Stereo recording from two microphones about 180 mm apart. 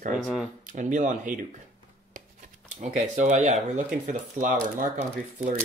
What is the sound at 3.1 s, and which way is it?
Speech, 40° right (ahead or behind).